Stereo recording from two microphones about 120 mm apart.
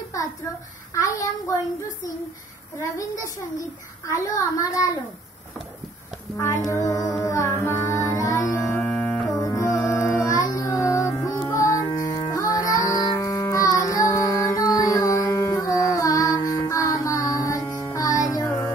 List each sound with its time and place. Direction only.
0.9 s a woman's voice: 30° left (ahead or behind)
4.1 s a woman's voice: 30° left (ahead or behind)
6.3 s music: 25° left (ahead or behind)